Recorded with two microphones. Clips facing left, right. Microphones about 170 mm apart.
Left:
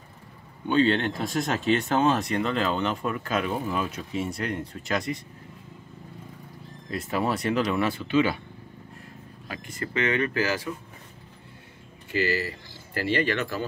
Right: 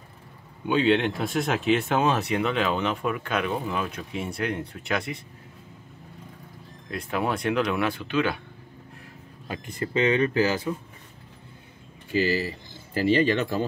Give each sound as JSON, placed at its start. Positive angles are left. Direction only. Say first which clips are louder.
{"t": 0.7, "sound": "speech", "louder": "right 1 dB", "side_deg": -5}
{"t": 6.9, "sound": "speech", "louder": "even", "side_deg": 0}
{"t": 9.5, "sound": "speech", "louder": "right 4 dB", "side_deg": -20}
{"t": 12.2, "sound": "speech", "louder": "right 2 dB", "side_deg": -15}